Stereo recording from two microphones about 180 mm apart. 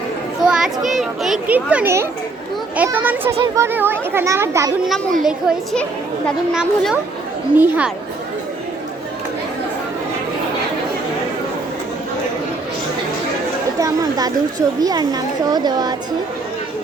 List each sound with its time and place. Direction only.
0.4 s a child's voice: centre (ahead or behind)
5.2 s a child's voice: centre (ahead or behind)
13.7 s chatter: 20° right (ahead or behind)
14.8 s speech: 20° right (ahead or behind)